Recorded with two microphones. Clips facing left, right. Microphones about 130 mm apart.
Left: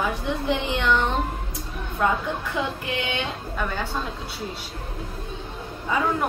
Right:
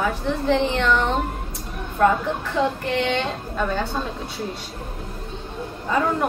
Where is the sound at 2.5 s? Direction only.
10° left (ahead or behind).